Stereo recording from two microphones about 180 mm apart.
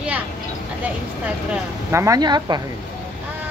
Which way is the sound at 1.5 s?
15° right (ahead or behind).